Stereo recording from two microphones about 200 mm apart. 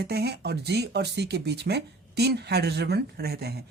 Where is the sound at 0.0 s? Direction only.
55° right (ahead or behind).